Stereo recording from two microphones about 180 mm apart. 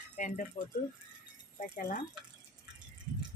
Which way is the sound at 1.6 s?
50° left (ahead or behind).